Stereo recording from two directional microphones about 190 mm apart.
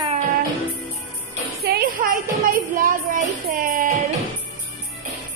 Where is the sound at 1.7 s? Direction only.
50° right (ahead or behind).